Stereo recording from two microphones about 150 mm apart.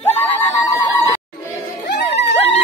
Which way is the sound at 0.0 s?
15° left (ahead or behind).